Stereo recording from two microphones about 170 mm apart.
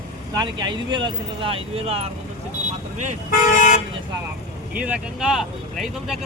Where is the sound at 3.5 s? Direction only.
45° left (ahead or behind).